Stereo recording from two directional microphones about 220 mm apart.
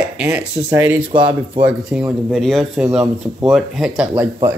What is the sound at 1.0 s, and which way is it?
Speech, 20° right (ahead or behind).